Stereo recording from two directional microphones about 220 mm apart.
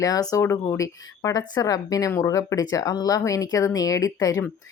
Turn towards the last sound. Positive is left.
turn(degrees=15)  # may be behind; listen again after turning